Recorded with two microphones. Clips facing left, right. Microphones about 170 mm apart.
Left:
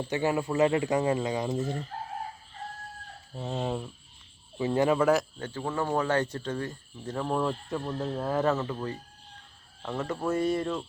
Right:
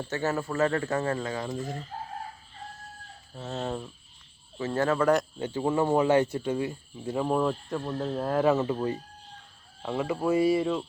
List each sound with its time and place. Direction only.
0.0 s speech: 15° left (ahead or behind)
3.3 s speech: 15° left (ahead or behind)
5.4 s speech: 15° right (ahead or behind)
8.5 s speech: 20° right (ahead or behind)